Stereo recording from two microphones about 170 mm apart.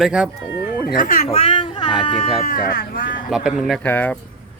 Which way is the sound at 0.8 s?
60° left (ahead or behind).